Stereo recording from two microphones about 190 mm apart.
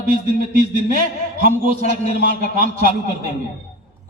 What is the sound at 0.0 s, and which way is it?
A man's voice, 45° right (ahead or behind).